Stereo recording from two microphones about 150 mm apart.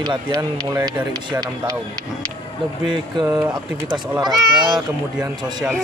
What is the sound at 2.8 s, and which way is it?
Speech, 30° right (ahead or behind).